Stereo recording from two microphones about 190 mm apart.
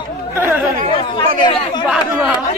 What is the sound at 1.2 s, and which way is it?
Chatter, 25° left (ahead or behind).